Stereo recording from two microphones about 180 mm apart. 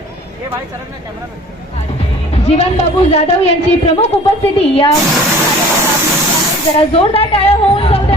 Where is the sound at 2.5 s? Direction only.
35° left (ahead or behind).